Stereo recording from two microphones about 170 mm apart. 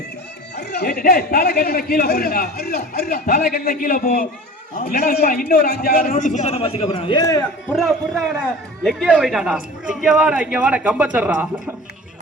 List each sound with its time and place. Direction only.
0.5 s a man's voice: 70° left (ahead or behind); by 7.4 s 20° left (ahead or behind)
7.7 s a man's voice: centre (ahead or behind)